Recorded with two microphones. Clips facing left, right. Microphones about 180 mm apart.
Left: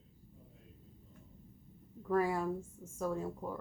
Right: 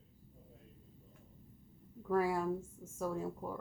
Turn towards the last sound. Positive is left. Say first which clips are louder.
# left 1 dB
turn(degrees=-5)  # may be behind; listen again after turning